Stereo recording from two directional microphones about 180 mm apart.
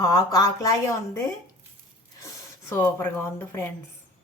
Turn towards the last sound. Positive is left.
turn(degrees=15)  # may be behind; listen again after turning